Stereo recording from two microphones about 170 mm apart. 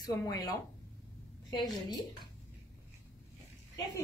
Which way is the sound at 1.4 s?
25° left (ahead or behind).